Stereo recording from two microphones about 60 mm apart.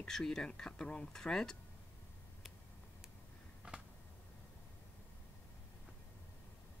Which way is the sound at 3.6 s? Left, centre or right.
Right.